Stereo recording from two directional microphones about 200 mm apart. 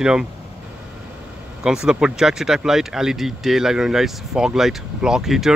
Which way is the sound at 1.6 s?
5° right (ahead or behind).